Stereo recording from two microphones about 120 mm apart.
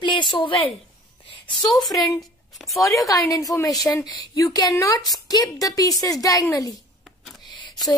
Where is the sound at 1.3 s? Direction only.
35° left (ahead or behind).